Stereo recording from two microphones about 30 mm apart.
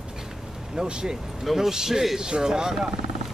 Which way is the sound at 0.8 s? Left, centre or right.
Right.